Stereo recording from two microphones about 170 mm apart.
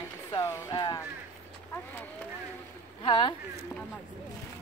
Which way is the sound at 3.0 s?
30° left (ahead or behind).